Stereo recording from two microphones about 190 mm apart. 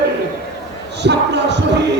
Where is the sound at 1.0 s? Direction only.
65° right (ahead or behind).